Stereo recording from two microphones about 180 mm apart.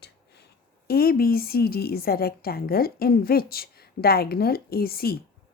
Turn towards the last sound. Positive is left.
turn(degrees=55)  # may be behind; listen again after turning